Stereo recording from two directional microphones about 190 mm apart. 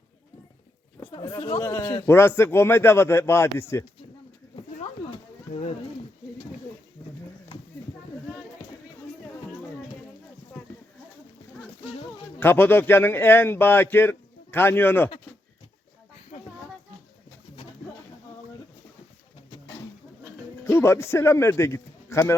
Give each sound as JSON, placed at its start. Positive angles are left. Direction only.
{"t": 0.9, "sound": "a man's voice", "side_deg": 15}
{"t": 2.0, "sound": "a man's voice", "side_deg": 15}
{"t": 12.4, "sound": "a man's voice", "side_deg": 10}
{"t": 20.7, "sound": "a man's voice", "side_deg": 15}